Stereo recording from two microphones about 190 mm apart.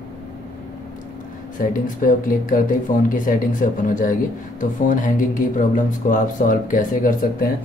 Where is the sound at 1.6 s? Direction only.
45° left (ahead or behind).